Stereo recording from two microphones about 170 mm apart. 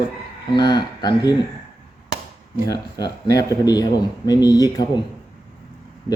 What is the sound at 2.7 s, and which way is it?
A man's voice, 20° left (ahead or behind).